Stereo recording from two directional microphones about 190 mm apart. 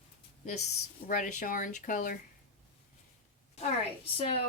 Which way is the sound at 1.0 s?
45° left (ahead or behind).